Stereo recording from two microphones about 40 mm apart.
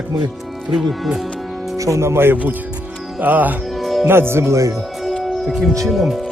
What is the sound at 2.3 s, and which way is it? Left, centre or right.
Speech, right.